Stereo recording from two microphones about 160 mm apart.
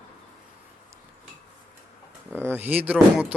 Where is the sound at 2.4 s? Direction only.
10° right (ahead or behind).